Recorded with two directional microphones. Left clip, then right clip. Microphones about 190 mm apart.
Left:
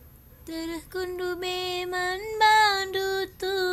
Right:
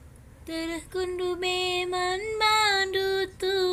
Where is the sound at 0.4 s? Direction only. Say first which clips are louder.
Right 2 dB; 25° left (ahead or behind).